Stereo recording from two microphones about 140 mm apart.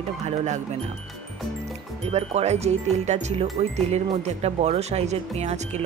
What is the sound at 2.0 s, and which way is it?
Speech, 50° right (ahead or behind).